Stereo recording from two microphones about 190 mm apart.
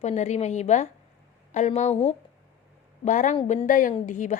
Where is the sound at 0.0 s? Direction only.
35° left (ahead or behind).